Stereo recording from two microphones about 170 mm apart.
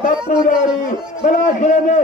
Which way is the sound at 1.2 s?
45° left (ahead or behind).